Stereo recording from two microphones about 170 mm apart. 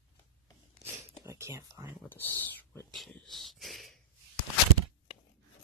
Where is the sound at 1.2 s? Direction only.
20° right (ahead or behind).